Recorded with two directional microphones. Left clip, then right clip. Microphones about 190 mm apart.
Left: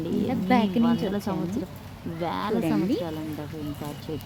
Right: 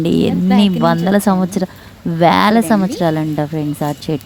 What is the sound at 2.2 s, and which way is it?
Speech, 55° right (ahead or behind).